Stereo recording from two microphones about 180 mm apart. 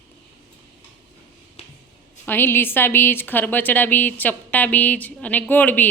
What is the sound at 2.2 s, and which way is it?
A woman's voice, 10° left (ahead or behind).